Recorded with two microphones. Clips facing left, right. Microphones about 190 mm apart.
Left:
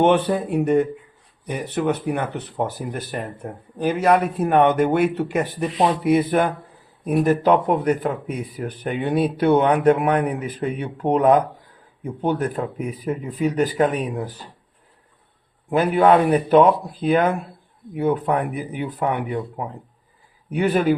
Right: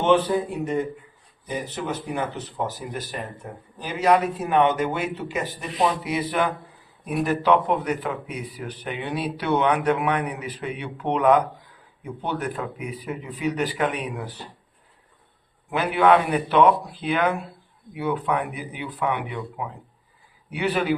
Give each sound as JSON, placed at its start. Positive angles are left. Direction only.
{"t": 0.0, "sound": "a man's voice", "side_deg": 60}
{"t": 15.7, "sound": "speech", "side_deg": 45}